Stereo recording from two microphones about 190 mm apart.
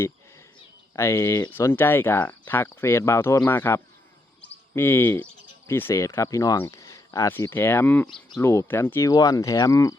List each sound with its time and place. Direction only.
0.9 s speech: 15° left (ahead or behind)